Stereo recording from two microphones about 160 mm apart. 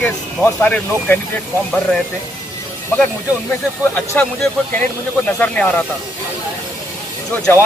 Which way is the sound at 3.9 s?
10° left (ahead or behind).